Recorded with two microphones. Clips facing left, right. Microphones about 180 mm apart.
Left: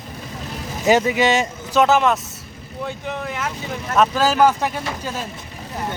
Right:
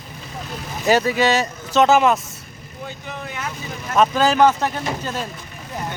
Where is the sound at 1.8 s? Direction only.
Centre (ahead or behind).